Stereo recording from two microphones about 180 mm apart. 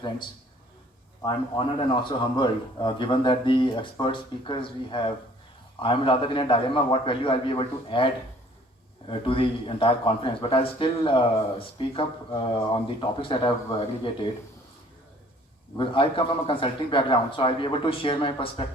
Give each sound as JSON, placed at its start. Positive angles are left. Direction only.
{"t": 1.2, "sound": "speech", "side_deg": 25}
{"t": 15.8, "sound": "speech", "side_deg": 30}